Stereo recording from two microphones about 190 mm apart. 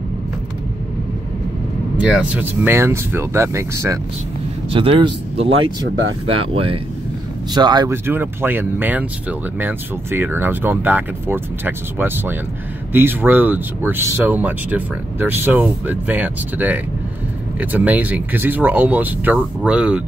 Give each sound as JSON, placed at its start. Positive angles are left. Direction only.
{"t": 2.0, "sound": "speech", "side_deg": -5}
{"t": 4.6, "sound": "speech", "side_deg": -30}